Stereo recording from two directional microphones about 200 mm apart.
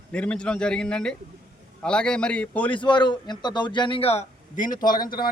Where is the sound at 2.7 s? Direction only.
25° left (ahead or behind).